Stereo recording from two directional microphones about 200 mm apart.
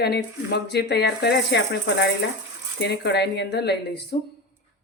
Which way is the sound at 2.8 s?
55° left (ahead or behind).